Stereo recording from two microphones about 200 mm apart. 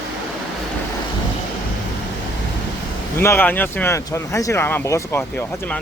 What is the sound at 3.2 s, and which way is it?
Speech, 10° left (ahead or behind).